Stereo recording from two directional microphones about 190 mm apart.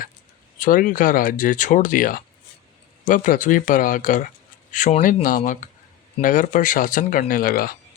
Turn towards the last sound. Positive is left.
turn(degrees=50)  # may be behind; listen again after turning